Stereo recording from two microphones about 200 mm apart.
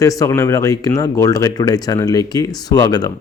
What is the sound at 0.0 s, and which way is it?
Speech, 15° left (ahead or behind).